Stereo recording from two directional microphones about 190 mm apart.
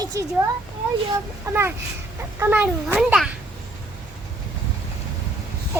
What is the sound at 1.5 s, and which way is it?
Child singing, 15° right (ahead or behind).